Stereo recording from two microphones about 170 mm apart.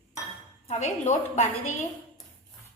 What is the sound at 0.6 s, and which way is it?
Speech, 40° left (ahead or behind).